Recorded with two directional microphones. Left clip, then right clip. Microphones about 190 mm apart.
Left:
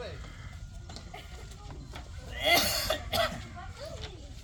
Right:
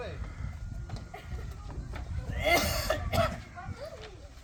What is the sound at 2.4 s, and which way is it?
Cough, 20° right (ahead or behind).